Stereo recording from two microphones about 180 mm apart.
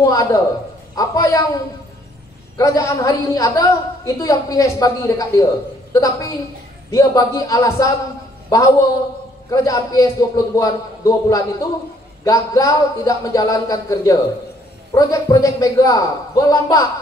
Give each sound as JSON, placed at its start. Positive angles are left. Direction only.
{"t": 0.0, "sound": "a woman's voice", "side_deg": 20}
{"t": 2.5, "sound": "a woman's voice", "side_deg": 20}